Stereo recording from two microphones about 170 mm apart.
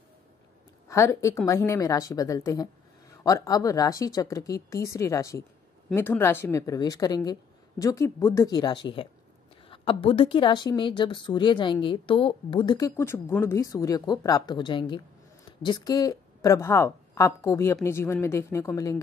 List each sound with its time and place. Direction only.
0.8 s a woman's voice: 15° left (ahead or behind)